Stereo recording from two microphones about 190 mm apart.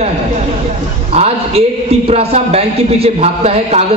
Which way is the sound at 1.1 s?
35° right (ahead or behind).